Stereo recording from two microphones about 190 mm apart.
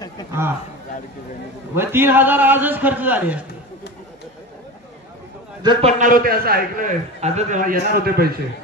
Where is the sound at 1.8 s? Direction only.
10° right (ahead or behind).